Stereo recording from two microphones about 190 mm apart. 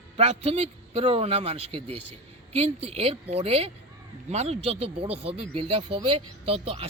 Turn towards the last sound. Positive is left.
turn(degrees=-30)  # may be behind; listen again after turning